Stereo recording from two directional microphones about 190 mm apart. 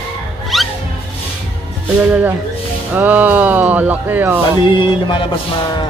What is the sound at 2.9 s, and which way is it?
Speech, 10° right (ahead or behind).